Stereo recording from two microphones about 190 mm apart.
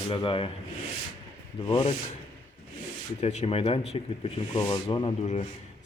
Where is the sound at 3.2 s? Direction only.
35° left (ahead or behind).